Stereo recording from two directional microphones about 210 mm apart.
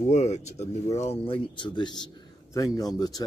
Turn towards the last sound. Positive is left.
turn(degrees=20)  # may be behind; listen again after turning